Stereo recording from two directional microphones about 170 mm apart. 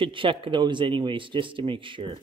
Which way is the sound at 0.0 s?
30° right (ahead or behind).